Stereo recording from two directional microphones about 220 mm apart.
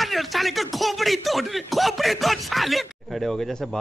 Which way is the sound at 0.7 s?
Centre (ahead or behind).